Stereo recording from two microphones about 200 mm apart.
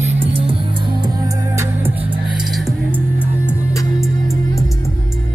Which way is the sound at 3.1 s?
15° left (ahead or behind).